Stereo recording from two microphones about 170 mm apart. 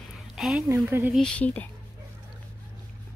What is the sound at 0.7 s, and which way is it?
Speech, 15° right (ahead or behind).